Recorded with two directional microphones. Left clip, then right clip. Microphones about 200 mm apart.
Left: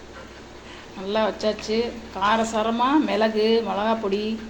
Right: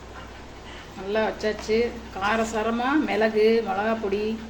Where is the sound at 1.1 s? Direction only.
20° left (ahead or behind).